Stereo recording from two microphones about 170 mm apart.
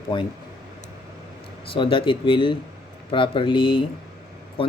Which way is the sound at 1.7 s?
30° left (ahead or behind).